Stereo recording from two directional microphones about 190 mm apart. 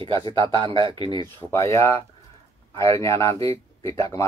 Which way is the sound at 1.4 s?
15° left (ahead or behind).